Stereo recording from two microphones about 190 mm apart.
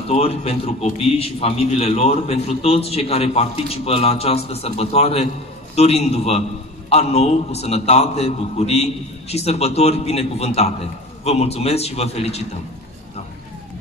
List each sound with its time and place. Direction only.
0.1 s a man's voice: 30° left (ahead or behind)